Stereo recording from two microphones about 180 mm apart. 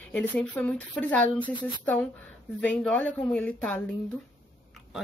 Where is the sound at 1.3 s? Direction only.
25° left (ahead or behind).